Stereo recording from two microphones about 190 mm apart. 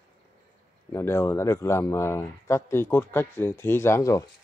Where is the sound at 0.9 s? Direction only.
15° left (ahead or behind).